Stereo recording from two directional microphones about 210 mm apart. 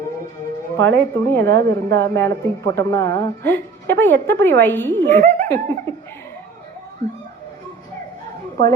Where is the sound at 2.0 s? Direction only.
10° left (ahead or behind).